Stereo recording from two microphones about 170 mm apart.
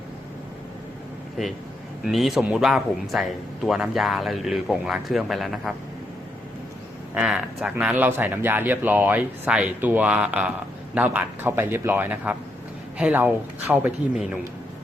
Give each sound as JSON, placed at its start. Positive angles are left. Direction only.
{"t": 2.0, "sound": "speech", "side_deg": 0}
{"t": 7.1, "sound": "speech", "side_deg": -5}